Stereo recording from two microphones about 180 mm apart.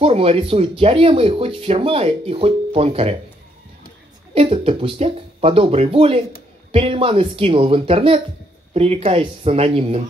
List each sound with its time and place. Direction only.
0.0 s speech: 35° right (ahead or behind)
4.3 s speech: 30° right (ahead or behind)